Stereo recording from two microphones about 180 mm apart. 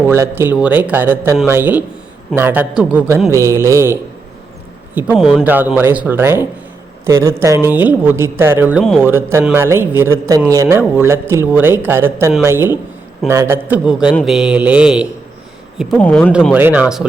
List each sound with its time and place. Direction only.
0.0 s a woman's voice: 15° right (ahead or behind)
5.1 s mantra: centre (ahead or behind)
5.5 s a woman's voice: 10° right (ahead or behind)
14.2 s mantra: centre (ahead or behind)
16.0 s speech: 10° left (ahead or behind)
16.6 s a woman's voice: 10° right (ahead or behind)